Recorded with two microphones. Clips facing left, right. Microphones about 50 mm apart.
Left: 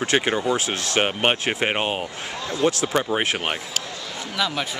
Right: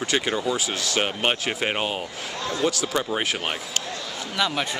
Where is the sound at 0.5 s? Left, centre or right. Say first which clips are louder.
Left 2 dB; left.